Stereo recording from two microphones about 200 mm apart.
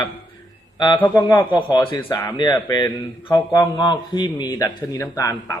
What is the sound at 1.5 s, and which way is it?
Speech, 25° left (ahead or behind).